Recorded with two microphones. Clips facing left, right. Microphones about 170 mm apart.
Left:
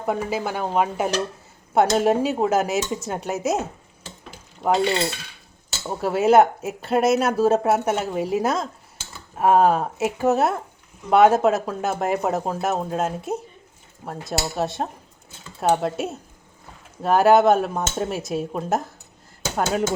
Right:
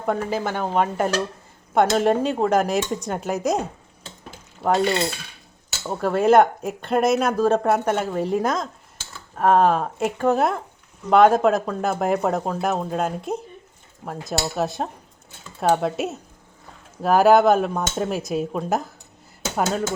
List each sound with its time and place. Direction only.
0.0 s speech: 5° left (ahead or behind)
4.6 s cutlery: 5° right (ahead or behind)
5.8 s speech: 5° left (ahead or behind)